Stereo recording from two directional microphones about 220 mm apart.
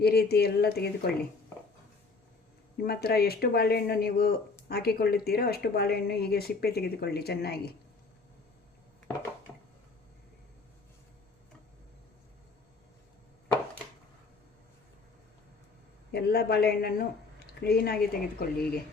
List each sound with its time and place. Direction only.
0.0 s speech: 45° left (ahead or behind)
2.8 s speech: 45° left (ahead or behind)
9.5 s a sound: 10° left (ahead or behind)
16.1 s speech: 45° left (ahead or behind)